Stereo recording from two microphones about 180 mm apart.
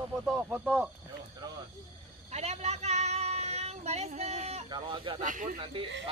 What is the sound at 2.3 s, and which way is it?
Female singing, 35° right (ahead or behind).